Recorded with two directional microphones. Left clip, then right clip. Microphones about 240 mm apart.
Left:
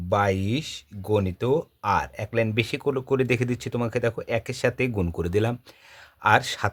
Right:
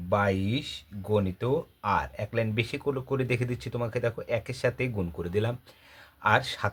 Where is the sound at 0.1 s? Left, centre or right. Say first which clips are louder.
Left 3 dB; left.